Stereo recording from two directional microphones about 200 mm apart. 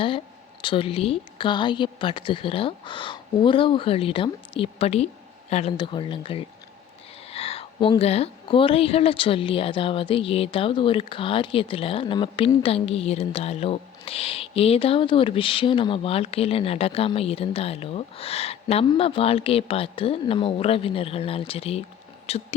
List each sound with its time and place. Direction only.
0.6 s speech: 25° left (ahead or behind)